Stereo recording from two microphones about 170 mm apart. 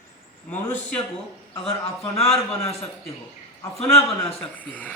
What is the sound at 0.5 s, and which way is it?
Speech, 10° left (ahead or behind).